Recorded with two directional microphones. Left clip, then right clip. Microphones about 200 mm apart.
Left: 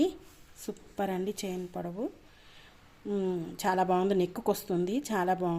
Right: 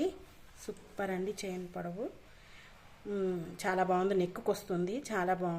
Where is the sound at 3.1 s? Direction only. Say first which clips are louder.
Left 3 dB; 15° left (ahead or behind).